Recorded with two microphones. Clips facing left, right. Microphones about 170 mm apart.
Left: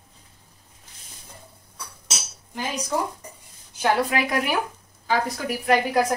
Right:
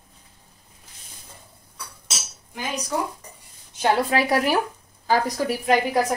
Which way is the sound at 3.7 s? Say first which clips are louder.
Right 1 dB; 35° right (ahead or behind).